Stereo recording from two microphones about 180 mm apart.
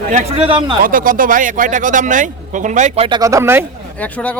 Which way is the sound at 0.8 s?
50° right (ahead or behind).